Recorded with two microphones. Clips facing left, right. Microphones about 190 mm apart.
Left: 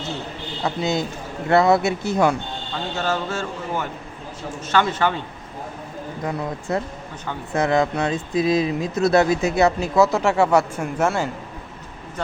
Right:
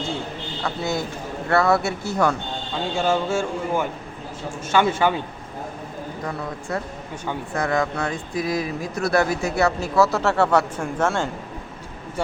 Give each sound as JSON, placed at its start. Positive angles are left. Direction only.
{"t": 0.6, "sound": "speech", "side_deg": 20}
{"t": 2.9, "sound": "speech", "side_deg": -10}
{"t": 6.2, "sound": "speech", "side_deg": 20}